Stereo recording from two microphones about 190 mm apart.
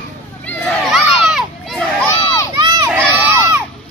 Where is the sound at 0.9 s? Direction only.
Centre (ahead or behind).